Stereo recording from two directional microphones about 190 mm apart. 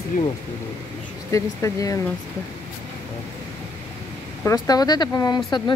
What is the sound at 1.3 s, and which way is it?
Speech, 15° left (ahead or behind).